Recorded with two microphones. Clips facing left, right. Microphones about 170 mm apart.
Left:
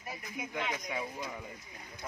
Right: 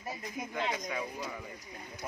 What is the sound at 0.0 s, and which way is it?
Speech, 35° right (ahead or behind).